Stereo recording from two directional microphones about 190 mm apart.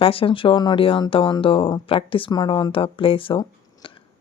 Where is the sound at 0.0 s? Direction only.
30° left (ahead or behind).